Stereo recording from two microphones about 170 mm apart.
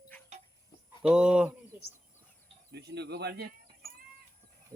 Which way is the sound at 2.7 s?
75° right (ahead or behind).